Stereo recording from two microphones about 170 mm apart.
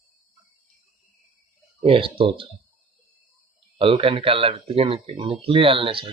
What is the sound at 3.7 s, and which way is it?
Speech, 35° right (ahead or behind).